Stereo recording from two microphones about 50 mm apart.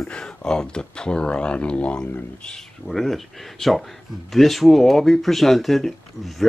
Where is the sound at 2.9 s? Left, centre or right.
Centre.